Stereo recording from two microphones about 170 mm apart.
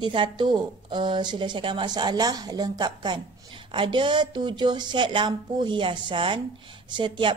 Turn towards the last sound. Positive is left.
turn(degrees=-30)  # may be behind; listen again after turning